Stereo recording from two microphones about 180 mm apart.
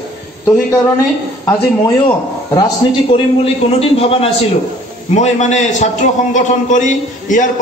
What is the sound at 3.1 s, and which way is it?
A man's voice, 30° left (ahead or behind).